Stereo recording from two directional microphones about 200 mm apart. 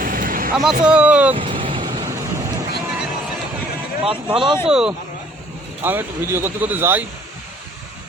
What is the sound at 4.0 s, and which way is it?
Speech, 25° right (ahead or behind).